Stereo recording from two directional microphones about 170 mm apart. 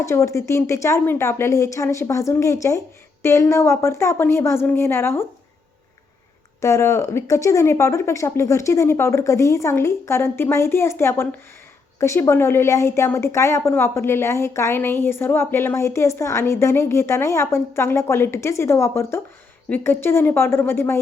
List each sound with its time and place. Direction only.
0.0 s a woman's voice: 15° left (ahead or behind)
6.6 s a woman's voice: 20° left (ahead or behind)